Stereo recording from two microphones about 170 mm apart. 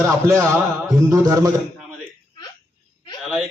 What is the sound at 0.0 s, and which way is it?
A man's voice, 15° right (ahead or behind).